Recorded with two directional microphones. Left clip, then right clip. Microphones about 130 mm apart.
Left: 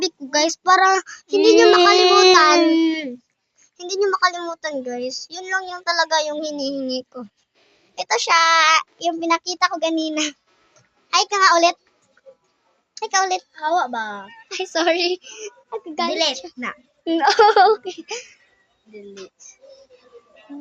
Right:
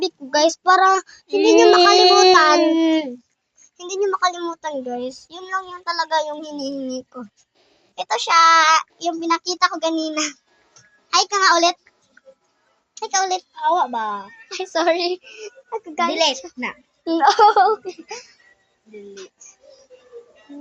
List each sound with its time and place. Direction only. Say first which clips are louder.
0.3 s child singing: right 1 dB; 5° right (ahead or behind)
1.0 s a child's voice: left 1 dB; 25° left (ahead or behind)
1.7 s speech: right 1 dB; 10° left (ahead or behind)
2.6 s speech: even; 20° left (ahead or behind)
3.8 s child singing: left 1 dB; 10° left (ahead or behind)
5.3 s a child's voice: left 2 dB; 20° left (ahead or behind)
13.0 s speech: left 1 dB; 15° left (ahead or behind)
18.0 s speech: left 3 dB; 35° left (ahead or behind)